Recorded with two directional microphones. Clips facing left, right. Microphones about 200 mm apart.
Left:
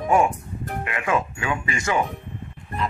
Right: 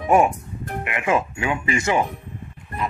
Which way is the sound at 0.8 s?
20° right (ahead or behind).